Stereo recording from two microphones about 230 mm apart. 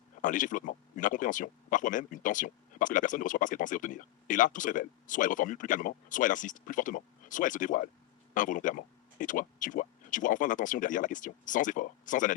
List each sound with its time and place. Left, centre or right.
0.2 s speech: left